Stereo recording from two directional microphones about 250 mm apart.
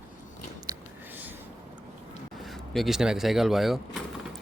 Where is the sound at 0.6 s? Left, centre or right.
Centre.